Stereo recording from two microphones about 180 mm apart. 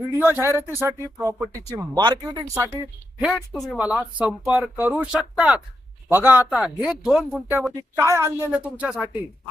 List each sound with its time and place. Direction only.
0.2 s speech: 10° right (ahead or behind)
3.2 s speech: 5° right (ahead or behind)
7.8 s speech: 15° right (ahead or behind)